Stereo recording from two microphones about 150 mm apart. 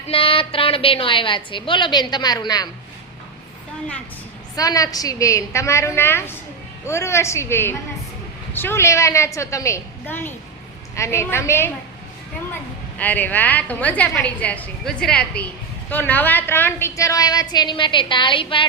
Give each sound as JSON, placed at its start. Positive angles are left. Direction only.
{"t": 0.1, "sound": "a woman's voice", "side_deg": 40}
{"t": 4.5, "sound": "a woman's voice", "side_deg": 25}
{"t": 13.0, "sound": "a woman's voice", "side_deg": 10}